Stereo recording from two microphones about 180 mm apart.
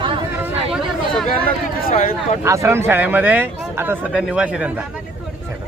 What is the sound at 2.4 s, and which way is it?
Speech, 15° right (ahead or behind).